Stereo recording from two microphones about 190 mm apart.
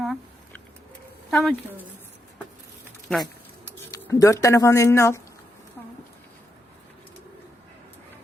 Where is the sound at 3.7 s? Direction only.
10° left (ahead or behind).